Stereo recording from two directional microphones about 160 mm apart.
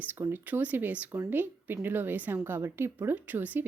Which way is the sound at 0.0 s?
10° right (ahead or behind).